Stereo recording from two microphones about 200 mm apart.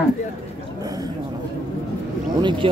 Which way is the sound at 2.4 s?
25° right (ahead or behind).